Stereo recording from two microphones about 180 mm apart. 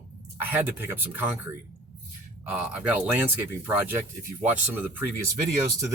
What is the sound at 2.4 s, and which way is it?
Speech, 5° right (ahead or behind).